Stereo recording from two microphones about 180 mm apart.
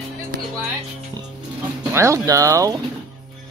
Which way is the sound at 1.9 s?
15° right (ahead or behind).